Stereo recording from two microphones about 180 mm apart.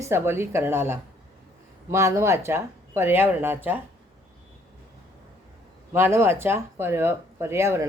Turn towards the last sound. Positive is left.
turn(degrees=-15)  # may be behind; listen again after turning